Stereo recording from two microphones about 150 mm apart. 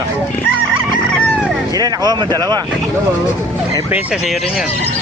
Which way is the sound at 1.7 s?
25° right (ahead or behind).